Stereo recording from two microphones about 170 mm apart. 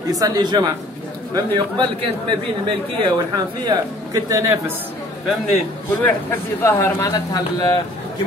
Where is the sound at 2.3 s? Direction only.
30° right (ahead or behind).